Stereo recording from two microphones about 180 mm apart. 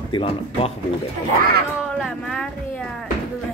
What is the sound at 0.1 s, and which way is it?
Speech, 30° left (ahead or behind).